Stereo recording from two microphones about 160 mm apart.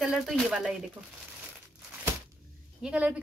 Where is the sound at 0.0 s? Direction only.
Centre (ahead or behind).